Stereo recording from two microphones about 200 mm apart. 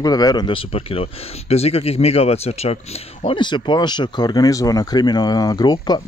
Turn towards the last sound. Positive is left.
turn(degrees=20)  # may be behind; listen again after turning